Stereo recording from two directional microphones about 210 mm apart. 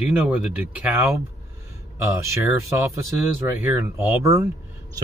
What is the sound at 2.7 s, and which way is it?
Speech, 10° right (ahead or behind).